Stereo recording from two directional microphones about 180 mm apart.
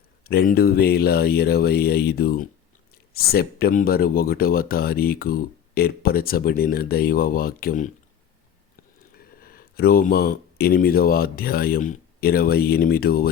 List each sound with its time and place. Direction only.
0.3 s speech: 60° left (ahead or behind)